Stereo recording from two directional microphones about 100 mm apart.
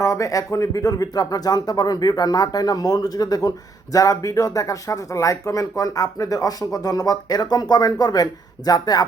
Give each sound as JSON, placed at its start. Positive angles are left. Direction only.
{"t": 0.0, "sound": "speech", "side_deg": 30}